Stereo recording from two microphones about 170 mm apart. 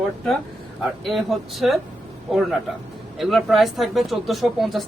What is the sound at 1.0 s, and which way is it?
A man's voice, centre (ahead or behind).